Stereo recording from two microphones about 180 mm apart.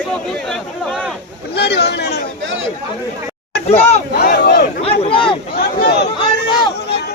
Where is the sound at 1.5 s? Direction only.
65° left (ahead or behind).